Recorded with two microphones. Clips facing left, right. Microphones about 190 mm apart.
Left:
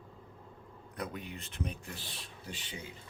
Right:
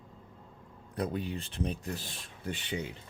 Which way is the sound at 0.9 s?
30° right (ahead or behind).